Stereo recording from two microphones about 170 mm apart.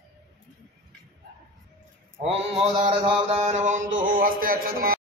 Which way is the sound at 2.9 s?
30° right (ahead or behind).